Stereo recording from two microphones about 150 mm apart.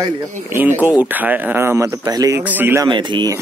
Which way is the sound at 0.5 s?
15° right (ahead or behind).